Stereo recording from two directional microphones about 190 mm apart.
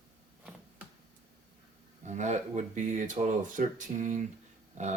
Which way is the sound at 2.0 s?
40° right (ahead or behind).